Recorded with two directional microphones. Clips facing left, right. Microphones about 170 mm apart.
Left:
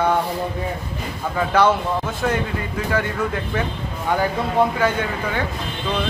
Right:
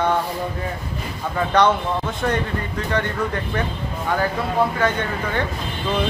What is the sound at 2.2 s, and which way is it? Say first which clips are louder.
Speech: even; 5° left (ahead or behind).